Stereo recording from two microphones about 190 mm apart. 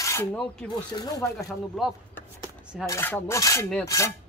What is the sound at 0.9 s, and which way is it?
Speech, 20° left (ahead or behind).